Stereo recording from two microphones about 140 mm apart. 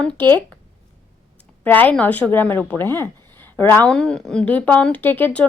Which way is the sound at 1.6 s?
15° left (ahead or behind).